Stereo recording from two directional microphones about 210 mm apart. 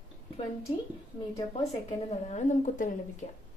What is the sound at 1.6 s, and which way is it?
A woman's voice, 30° left (ahead or behind).